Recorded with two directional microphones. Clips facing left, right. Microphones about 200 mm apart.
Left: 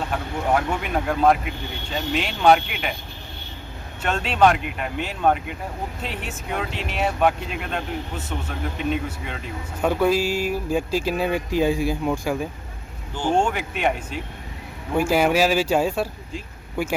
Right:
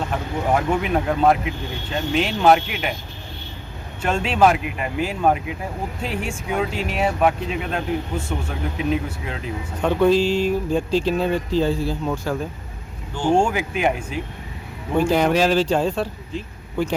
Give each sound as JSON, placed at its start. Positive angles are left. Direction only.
{"t": 0.1, "sound": "speech", "side_deg": 0}
{"t": 4.0, "sound": "speech", "side_deg": -5}
{"t": 13.3, "sound": "speech", "side_deg": -5}
{"t": 14.9, "sound": "speech", "side_deg": 10}